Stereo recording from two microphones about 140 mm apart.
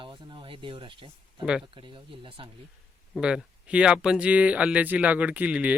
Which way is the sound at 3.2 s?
5° right (ahead or behind).